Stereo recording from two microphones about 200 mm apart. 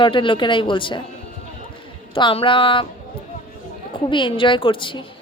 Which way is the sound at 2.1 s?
25° left (ahead or behind).